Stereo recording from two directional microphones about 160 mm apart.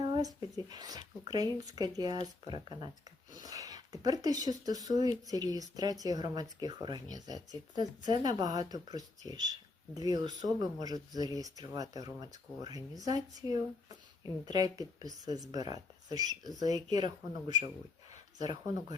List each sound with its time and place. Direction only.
0.0 s a sound: 25° right (ahead or behind)
0.5 s speech: 25° right (ahead or behind)
18.3 s speech: 25° right (ahead or behind)